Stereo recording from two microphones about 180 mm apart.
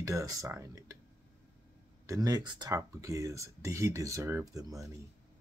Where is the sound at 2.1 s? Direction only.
20° right (ahead or behind).